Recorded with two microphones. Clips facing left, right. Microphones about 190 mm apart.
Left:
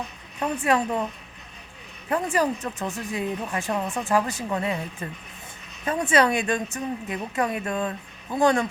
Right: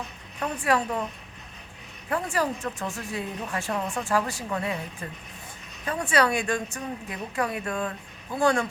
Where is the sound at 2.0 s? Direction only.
20° left (ahead or behind).